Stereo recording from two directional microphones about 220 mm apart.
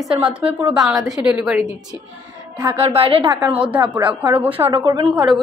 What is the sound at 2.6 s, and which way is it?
Speech, 20° right (ahead or behind).